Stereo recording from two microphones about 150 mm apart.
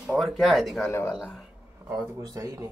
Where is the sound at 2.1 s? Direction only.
25° right (ahead or behind).